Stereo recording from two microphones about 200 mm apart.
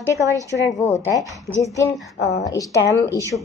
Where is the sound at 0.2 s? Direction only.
15° right (ahead or behind).